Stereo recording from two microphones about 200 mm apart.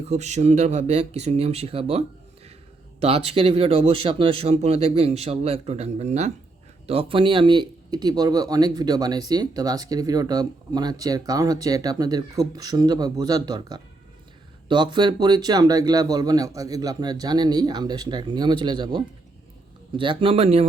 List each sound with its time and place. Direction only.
0.0 s speech: 35° right (ahead or behind)